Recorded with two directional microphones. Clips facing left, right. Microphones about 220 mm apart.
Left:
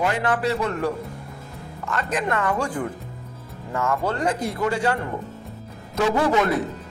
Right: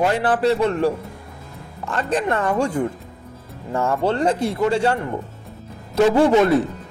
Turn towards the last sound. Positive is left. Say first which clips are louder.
# right 6 dB
turn(degrees=-30)  # may be behind; listen again after turning